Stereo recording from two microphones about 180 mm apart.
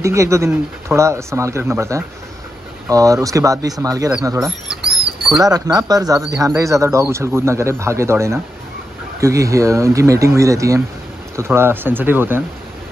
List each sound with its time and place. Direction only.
0.0 s speech: 15° right (ahead or behind)
4.5 s rodents: centre (ahead or behind)
5.4 s speech: 20° right (ahead or behind)